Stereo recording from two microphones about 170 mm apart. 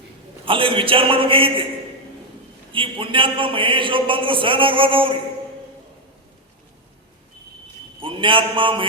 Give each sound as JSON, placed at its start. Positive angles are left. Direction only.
{"t": 0.4, "sound": "speech", "side_deg": -30}
{"t": 2.7, "sound": "speech", "side_deg": -30}
{"t": 8.0, "sound": "speech", "side_deg": -30}